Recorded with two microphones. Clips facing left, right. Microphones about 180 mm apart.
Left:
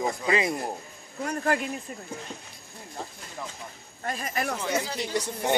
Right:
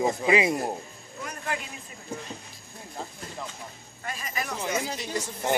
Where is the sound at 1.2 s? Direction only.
45° left (ahead or behind).